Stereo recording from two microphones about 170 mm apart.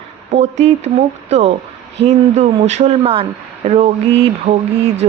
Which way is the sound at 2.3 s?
40° right (ahead or behind).